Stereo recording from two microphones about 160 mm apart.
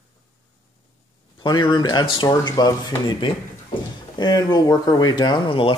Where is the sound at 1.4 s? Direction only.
30° left (ahead or behind).